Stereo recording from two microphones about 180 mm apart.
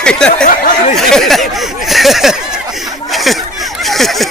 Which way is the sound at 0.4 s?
50° left (ahead or behind).